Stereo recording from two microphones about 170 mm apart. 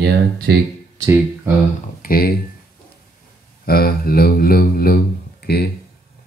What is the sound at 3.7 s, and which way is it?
Speech, 60° left (ahead or behind).